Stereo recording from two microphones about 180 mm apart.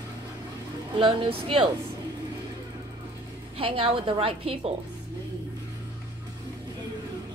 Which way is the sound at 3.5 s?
30° right (ahead or behind).